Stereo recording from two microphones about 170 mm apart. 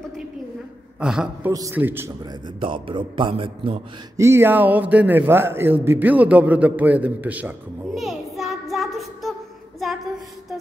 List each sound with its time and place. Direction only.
0.9 s a woman's voice: 5° right (ahead or behind)
1.5 s speech: 20° right (ahead or behind)
2.4 s a man's voice: 30° right (ahead or behind)
4.2 s a man's voice: 15° right (ahead or behind); by 9.3 s centre (ahead or behind)